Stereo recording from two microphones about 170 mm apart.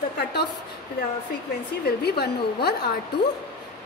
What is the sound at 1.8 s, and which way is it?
Speech, 70° left (ahead or behind).